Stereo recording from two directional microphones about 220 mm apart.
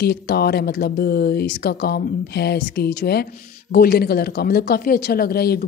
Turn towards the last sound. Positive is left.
turn(degrees=45)  # may be behind; listen again after turning